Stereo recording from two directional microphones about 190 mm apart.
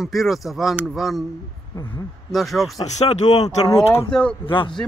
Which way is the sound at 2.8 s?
35° left (ahead or behind).